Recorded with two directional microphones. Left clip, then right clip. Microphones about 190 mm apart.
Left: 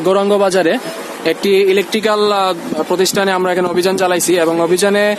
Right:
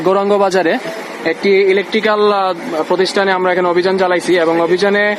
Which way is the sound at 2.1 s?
25° left (ahead or behind).